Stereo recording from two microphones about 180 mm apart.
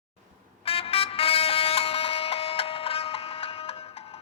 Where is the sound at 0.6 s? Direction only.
30° left (ahead or behind).